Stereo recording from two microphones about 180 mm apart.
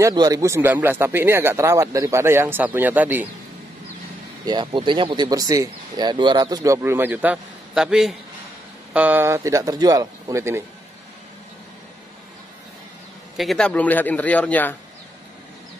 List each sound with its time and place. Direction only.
0.0 s speech: 20° right (ahead or behind)
4.5 s speech: 25° right (ahead or behind)
13.4 s speech: centre (ahead or behind)